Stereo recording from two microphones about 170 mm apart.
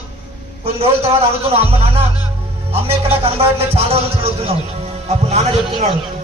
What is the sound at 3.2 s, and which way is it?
Speech, 35° right (ahead or behind).